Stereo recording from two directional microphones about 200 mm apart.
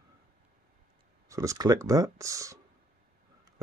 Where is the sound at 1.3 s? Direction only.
15° right (ahead or behind).